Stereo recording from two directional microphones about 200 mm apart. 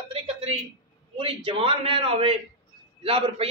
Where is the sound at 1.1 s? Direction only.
25° right (ahead or behind).